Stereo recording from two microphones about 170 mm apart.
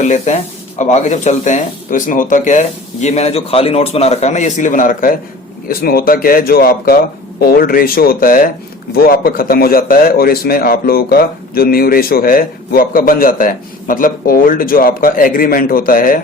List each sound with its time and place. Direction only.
0.0 s a man's voice: 45° left (ahead or behind)